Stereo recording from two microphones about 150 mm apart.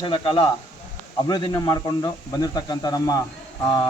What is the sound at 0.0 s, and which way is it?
A man's voice, 35° left (ahead or behind).